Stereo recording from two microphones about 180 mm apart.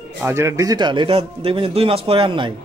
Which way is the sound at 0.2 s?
15° right (ahead or behind).